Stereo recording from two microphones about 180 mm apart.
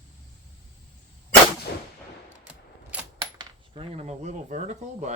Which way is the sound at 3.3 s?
35° right (ahead or behind).